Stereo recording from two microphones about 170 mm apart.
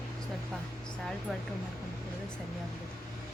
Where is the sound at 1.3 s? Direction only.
Centre (ahead or behind).